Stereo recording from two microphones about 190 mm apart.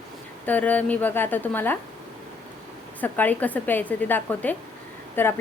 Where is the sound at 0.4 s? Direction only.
10° left (ahead or behind).